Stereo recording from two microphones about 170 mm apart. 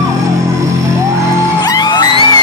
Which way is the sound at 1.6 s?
25° left (ahead or behind).